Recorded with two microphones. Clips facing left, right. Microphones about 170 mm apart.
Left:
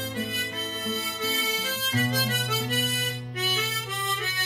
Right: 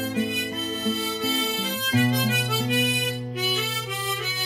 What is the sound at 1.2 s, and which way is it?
Harmonica, centre (ahead or behind).